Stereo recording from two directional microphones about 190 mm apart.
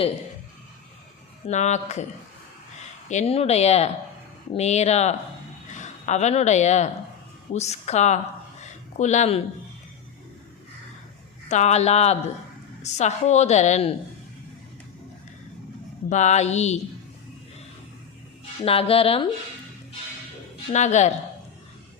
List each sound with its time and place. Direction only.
1.5 s a woman's voice: 35° left (ahead or behind)
3.1 s a woman's voice: 35° left (ahead or behind)
11.4 s a woman's voice: 35° left (ahead or behind)
16.0 s a woman's voice: 40° left (ahead or behind)
18.6 s speech: 30° left (ahead or behind)
20.7 s a woman's voice: 35° left (ahead or behind)